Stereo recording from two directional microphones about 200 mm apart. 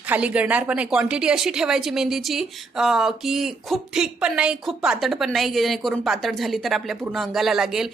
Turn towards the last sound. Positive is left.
turn(degrees=0)  # may be behind; listen again after turning